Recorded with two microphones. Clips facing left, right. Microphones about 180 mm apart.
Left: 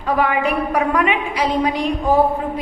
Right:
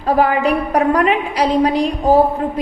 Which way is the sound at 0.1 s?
35° right (ahead or behind).